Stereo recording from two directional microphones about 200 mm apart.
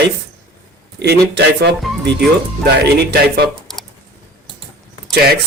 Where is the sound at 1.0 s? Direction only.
55° right (ahead or behind).